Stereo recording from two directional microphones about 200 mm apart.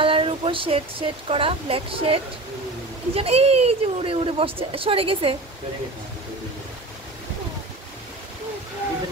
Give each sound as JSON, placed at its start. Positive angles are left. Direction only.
{"t": 0.0, "sound": "speech", "side_deg": -25}
{"t": 3.2, "sound": "speech", "side_deg": -30}